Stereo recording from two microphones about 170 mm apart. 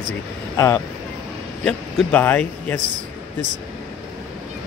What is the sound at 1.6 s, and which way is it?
Speech, 5° left (ahead or behind).